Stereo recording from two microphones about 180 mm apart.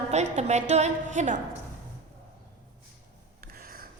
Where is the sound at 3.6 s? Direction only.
55° right (ahead or behind).